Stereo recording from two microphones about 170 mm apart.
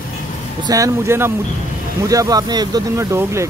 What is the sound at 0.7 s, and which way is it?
Speech, 20° right (ahead or behind).